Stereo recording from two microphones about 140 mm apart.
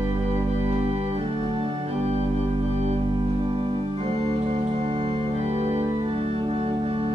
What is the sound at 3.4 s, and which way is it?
Organ, 40° right (ahead or behind).